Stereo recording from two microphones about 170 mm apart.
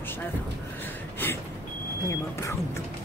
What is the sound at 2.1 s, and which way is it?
Speech, 15° left (ahead or behind).